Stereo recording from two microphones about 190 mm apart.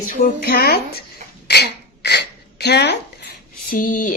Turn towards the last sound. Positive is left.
turn(degrees=45)  # may be behind; listen again after turning